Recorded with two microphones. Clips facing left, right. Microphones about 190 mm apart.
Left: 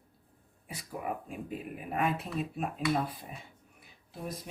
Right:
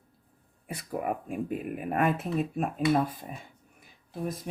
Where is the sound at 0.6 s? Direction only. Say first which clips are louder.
Right 6 dB; 55° right (ahead or behind).